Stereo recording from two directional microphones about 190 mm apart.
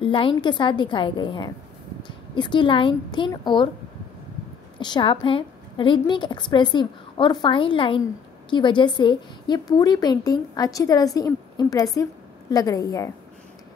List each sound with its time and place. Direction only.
0.0 s a woman's voice: 25° left (ahead or behind)
4.7 s a woman's voice: 25° left (ahead or behind)